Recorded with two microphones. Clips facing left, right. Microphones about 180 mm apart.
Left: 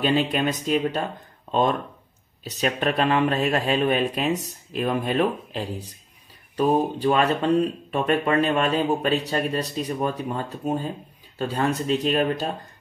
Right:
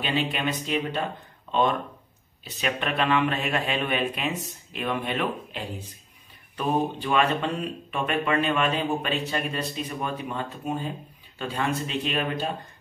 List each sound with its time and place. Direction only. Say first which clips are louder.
0.0 s speech: left 5 dB; 40° left (ahead or behind)